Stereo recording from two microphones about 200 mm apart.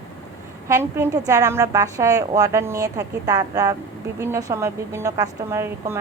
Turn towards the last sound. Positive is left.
turn(degrees=-15)  # may be behind; listen again after turning